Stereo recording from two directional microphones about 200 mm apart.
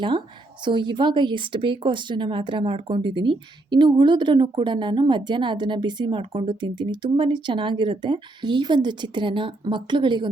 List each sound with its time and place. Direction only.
0.6 s speech: 25° right (ahead or behind)